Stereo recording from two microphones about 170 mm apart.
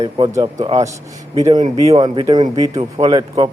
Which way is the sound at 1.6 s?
40° right (ahead or behind).